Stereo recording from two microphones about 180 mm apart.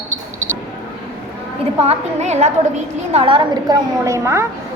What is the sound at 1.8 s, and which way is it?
A woman's voice, 35° right (ahead or behind).